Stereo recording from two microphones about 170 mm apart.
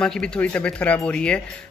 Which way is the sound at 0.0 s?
5° left (ahead or behind).